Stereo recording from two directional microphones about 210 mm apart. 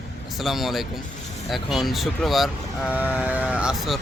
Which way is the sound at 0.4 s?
Centre (ahead or behind).